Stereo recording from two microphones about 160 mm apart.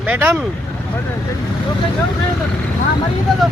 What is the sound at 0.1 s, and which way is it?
Speech, 10° right (ahead or behind).